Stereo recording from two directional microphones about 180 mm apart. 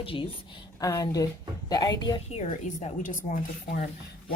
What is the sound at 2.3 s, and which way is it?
A woman's voice, 40° left (ahead or behind).